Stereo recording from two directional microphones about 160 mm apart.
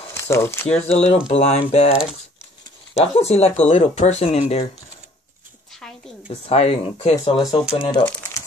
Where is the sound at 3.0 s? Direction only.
40° left (ahead or behind).